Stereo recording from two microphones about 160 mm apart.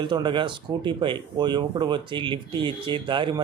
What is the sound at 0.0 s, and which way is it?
Speech, 30° right (ahead or behind).